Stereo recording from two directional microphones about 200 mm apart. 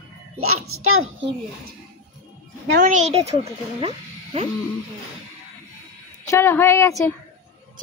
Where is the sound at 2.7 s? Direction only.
40° right (ahead or behind).